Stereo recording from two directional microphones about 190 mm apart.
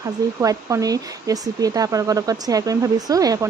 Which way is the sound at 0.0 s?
15° right (ahead or behind).